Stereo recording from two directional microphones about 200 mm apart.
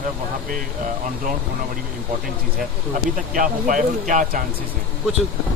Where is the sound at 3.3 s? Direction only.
45° right (ahead or behind).